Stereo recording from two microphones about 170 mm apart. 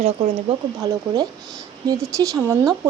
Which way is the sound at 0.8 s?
20° right (ahead or behind).